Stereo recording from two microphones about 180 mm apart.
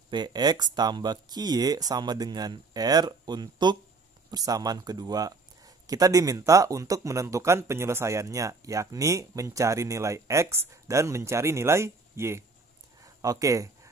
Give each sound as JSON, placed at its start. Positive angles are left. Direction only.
{"t": 0.1, "sound": "speech", "side_deg": -25}